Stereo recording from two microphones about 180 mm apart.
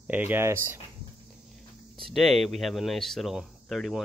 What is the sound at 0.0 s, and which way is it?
Speech, 10° right (ahead or behind).